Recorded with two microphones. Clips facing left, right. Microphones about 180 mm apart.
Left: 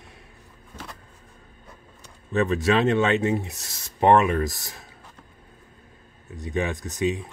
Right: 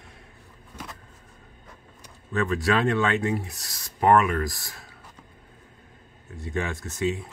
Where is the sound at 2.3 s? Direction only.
20° left (ahead or behind).